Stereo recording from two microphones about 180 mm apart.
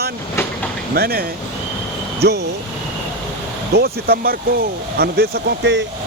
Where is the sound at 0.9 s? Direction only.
60° right (ahead or behind).